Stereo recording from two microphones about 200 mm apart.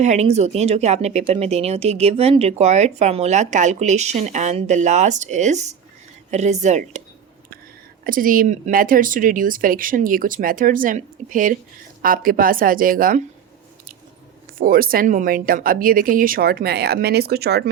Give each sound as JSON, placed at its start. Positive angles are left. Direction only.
{"t": 0.0, "sound": "speech", "side_deg": -35}
{"t": 8.0, "sound": "speech", "side_deg": -45}
{"t": 14.6, "sound": "speech", "side_deg": -45}